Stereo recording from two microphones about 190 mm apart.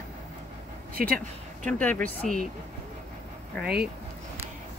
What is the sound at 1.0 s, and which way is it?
Speech, 50° right (ahead or behind).